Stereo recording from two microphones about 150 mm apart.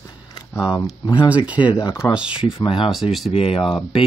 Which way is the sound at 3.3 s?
40° left (ahead or behind).